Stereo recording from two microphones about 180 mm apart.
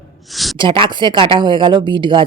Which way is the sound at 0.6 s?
30° right (ahead or behind).